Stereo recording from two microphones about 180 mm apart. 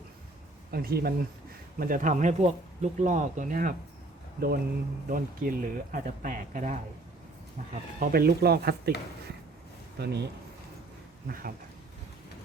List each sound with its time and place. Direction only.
0.7 s speech: 60° right (ahead or behind)
1.8 s speech: 50° right (ahead or behind)
7.9 s speech: 55° right (ahead or behind)
10.0 s speech: 65° right (ahead or behind)